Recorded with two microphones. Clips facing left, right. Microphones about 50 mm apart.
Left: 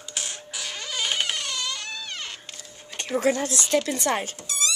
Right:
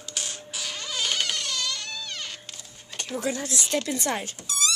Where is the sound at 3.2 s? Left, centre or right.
Left.